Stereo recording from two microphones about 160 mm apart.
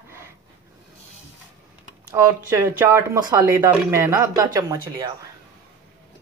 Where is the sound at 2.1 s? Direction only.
15° right (ahead or behind).